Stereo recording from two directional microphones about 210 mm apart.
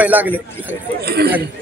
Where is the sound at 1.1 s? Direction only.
50° right (ahead or behind).